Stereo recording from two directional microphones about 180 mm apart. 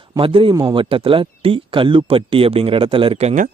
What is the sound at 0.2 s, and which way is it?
Speech, 30° right (ahead or behind).